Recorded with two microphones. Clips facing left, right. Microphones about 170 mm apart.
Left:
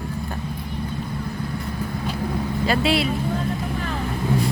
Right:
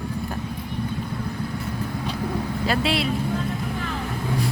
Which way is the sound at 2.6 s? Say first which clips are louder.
Left 3 dB; centre (ahead or behind).